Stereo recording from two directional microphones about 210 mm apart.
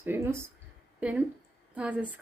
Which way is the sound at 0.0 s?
10° right (ahead or behind).